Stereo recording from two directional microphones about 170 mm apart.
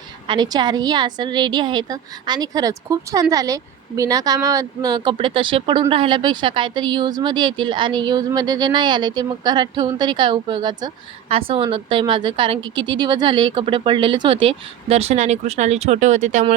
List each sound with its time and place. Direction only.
0.3 s a woman's voice: 25° right (ahead or behind); by 16.6 s 45° right (ahead or behind)